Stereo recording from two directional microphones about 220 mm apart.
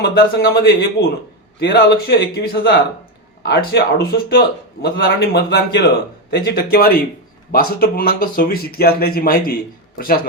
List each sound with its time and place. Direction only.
0.0 s a man's voice: 45° left (ahead or behind)